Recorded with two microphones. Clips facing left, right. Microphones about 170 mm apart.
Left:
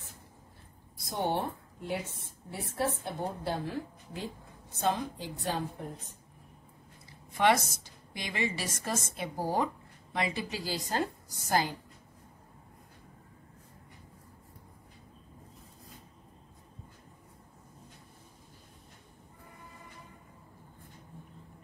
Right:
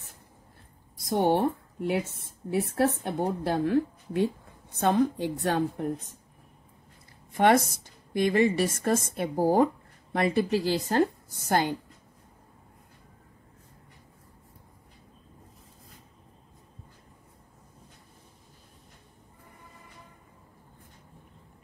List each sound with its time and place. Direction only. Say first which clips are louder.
1.1 s a woman's voice: right 8 dB; 60° right (ahead or behind)
7.3 s a woman's voice: right 5 dB; 50° right (ahead or behind)